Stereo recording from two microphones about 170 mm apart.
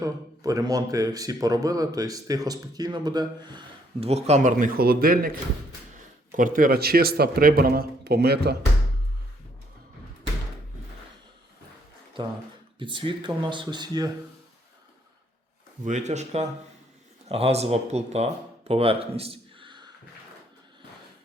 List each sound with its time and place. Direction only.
0.0 s a man's voice: 20° right (ahead or behind)
4.0 s a man's voice: 40° right (ahead or behind); by 5.3 s 60° right (ahead or behind)
6.3 s a man's voice: 55° right (ahead or behind); by 8.5 s 70° right (ahead or behind)
12.8 s a man's voice: 30° right (ahead or behind)
15.8 s speech: 45° right (ahead or behind); by 19.8 s 30° right (ahead or behind)